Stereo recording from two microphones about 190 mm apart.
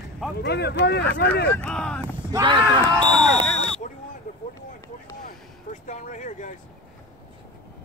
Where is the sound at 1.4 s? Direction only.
5° left (ahead or behind).